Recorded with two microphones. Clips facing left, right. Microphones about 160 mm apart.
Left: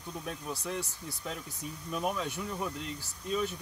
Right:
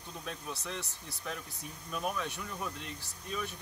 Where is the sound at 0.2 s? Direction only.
15° left (ahead or behind).